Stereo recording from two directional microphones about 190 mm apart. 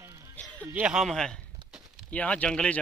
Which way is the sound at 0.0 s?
15° right (ahead or behind).